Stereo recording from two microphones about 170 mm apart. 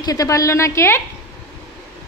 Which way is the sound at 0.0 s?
20° left (ahead or behind).